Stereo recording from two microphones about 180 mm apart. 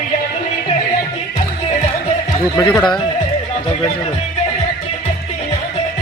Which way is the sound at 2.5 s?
15° left (ahead or behind).